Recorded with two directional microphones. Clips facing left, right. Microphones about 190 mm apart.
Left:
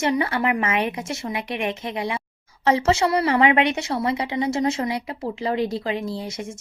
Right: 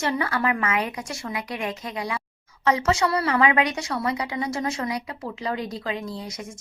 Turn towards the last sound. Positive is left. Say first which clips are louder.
# left 4 dB
turn(degrees=30)  # may be behind; listen again after turning